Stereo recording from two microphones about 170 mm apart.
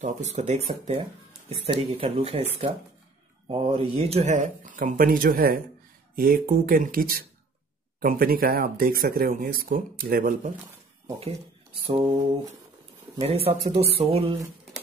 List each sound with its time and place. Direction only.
0.0 s speech: 40° right (ahead or behind)
11.1 s speech: 35° right (ahead or behind)
13.2 s speech: 35° right (ahead or behind)